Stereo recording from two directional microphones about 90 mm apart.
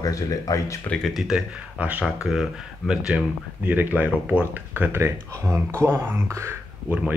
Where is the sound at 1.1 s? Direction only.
5° right (ahead or behind).